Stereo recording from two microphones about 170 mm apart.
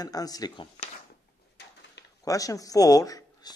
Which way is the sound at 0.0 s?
20° left (ahead or behind).